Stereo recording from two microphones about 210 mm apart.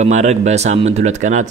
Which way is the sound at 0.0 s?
35° right (ahead or behind).